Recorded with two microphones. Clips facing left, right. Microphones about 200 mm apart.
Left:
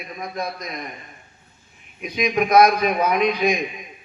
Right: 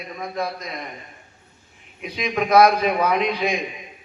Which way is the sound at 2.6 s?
30° right (ahead or behind).